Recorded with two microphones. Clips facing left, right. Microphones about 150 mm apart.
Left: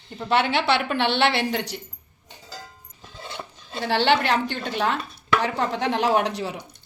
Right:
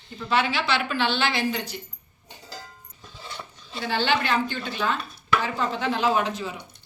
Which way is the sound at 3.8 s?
70° left (ahead or behind).